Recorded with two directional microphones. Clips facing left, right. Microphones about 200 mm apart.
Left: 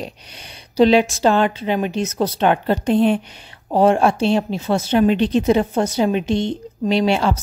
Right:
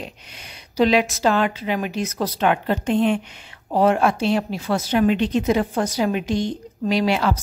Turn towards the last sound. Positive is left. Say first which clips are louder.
# left 3 dB
turn(degrees=25)  # may be behind; listen again after turning